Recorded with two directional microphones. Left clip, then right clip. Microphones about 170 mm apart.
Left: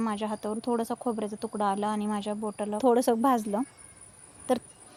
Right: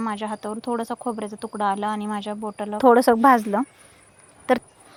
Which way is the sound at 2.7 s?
25° right (ahead or behind).